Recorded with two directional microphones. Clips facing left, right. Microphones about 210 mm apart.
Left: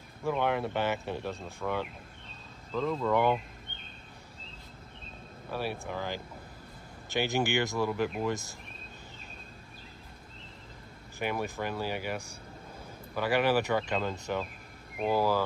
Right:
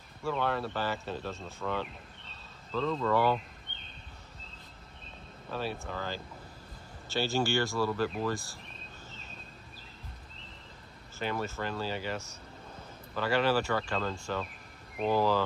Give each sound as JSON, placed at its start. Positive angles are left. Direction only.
{"t": 0.2, "sound": "speech", "side_deg": 15}
{"t": 5.5, "sound": "speech", "side_deg": 10}
{"t": 11.1, "sound": "speech", "side_deg": 15}